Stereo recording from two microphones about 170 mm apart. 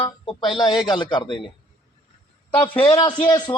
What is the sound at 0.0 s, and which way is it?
A man's voice, 30° left (ahead or behind).